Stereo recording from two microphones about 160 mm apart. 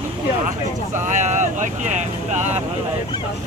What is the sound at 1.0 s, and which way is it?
Speech, 50° right (ahead or behind).